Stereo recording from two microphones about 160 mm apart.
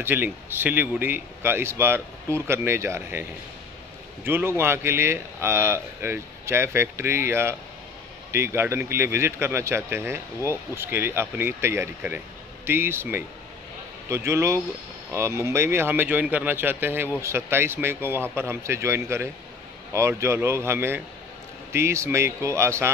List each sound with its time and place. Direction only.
0.0 s speech: 15° right (ahead or behind)